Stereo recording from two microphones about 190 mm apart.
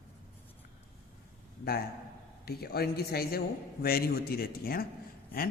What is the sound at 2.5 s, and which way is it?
A woman's voice, 55° left (ahead or behind).